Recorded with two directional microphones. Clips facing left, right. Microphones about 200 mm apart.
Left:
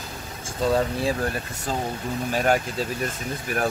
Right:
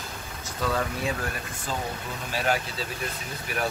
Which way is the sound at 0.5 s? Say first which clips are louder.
Left 6 dB; 30° left (ahead or behind).